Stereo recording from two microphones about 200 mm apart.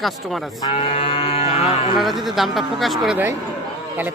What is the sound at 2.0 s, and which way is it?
Speech, centre (ahead or behind).